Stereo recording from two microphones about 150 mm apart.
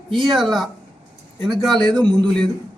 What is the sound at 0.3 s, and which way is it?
A man's voice, centre (ahead or behind).